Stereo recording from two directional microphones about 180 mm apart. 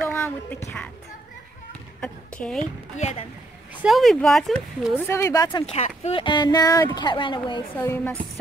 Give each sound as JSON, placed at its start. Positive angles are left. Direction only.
{"t": 0.1, "sound": "a sound", "side_deg": 15}
{"t": 2.0, "sound": "a sound", "side_deg": 5}
{"t": 3.8, "sound": "speech", "side_deg": 0}
{"t": 4.9, "sound": "speech", "side_deg": 15}
{"t": 5.7, "sound": "speech", "side_deg": 35}
{"t": 7.7, "sound": "speech", "side_deg": 10}